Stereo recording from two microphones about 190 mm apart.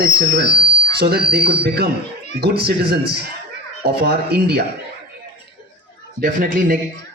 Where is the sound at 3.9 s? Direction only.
60° right (ahead or behind).